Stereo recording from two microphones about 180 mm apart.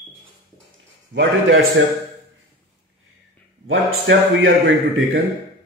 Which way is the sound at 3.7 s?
90° right.